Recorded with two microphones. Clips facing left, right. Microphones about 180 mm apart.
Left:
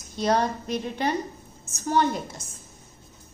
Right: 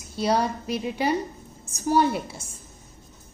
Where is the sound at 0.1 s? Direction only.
5° right (ahead or behind).